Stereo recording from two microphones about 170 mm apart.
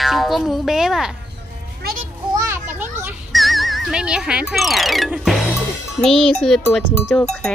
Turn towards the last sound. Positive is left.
turn(degrees=5)  # may be behind; listen again after turning